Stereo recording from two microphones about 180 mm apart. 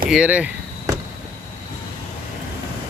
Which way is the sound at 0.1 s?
5° right (ahead or behind).